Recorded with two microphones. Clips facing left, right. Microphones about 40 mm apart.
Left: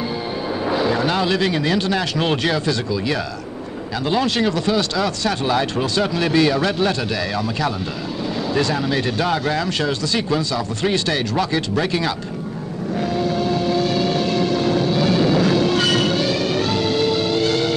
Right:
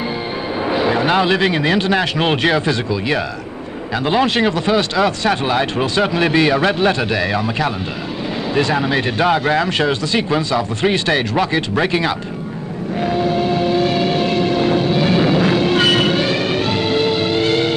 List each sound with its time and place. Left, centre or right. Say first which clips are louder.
0.6 s speech: right 3 dB; right
12.9 s vehicle: right 4 dB; right